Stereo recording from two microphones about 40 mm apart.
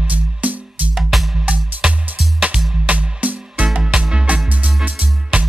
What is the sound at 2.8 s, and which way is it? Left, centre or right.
Music, right.